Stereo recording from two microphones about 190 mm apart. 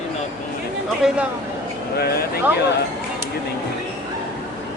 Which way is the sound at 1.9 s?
55° left (ahead or behind).